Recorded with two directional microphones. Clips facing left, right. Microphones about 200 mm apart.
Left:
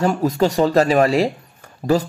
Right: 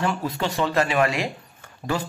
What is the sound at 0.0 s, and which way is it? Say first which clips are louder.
Speech: left 8 dB; 40° left (ahead or behind).